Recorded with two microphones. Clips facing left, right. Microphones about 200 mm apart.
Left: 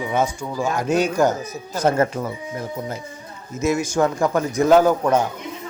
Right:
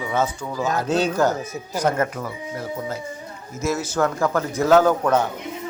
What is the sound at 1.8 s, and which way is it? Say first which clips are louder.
Speech: left 3 dB; 25° left (ahead or behind).